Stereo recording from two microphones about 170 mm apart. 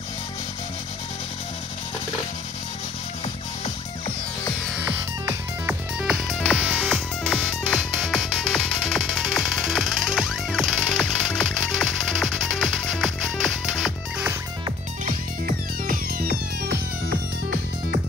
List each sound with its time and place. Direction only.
5.2 s music: 10° right (ahead or behind)
15.0 s music: 55° right (ahead or behind)